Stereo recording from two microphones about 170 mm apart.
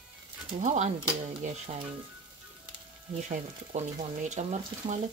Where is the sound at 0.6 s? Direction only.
45° right (ahead or behind).